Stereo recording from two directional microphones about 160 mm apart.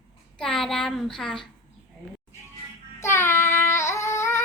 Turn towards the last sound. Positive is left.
turn(degrees=15)  # may be behind; listen again after turning